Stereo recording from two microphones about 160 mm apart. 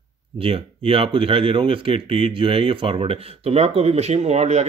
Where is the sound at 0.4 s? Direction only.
35° right (ahead or behind).